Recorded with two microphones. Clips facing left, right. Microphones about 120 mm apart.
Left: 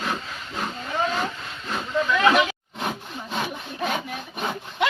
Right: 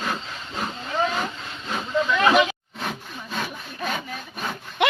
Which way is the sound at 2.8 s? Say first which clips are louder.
Left 3 dB; 20° left (ahead or behind).